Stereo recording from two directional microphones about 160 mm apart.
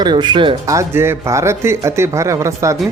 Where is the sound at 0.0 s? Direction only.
30° right (ahead or behind).